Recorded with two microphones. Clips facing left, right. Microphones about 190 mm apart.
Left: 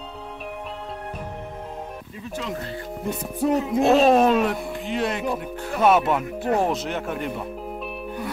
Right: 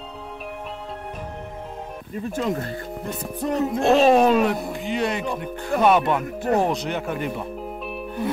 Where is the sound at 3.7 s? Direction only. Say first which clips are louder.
Right 1 dB; centre (ahead or behind).